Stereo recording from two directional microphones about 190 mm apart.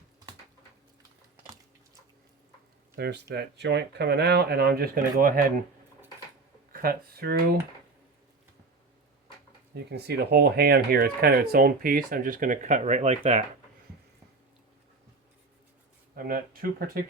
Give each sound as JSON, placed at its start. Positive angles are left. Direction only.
{"t": 2.9, "sound": "speech", "side_deg": -60}
{"t": 6.7, "sound": "speech", "side_deg": -50}
{"t": 9.7, "sound": "speech", "side_deg": -60}
{"t": 16.1, "sound": "speech", "side_deg": -50}